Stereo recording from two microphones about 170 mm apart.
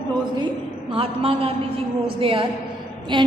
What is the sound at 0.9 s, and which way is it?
A man's voice, 35° right (ahead or behind).